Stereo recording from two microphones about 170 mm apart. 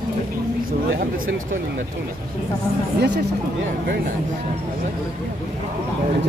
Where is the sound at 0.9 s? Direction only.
55° right (ahead or behind).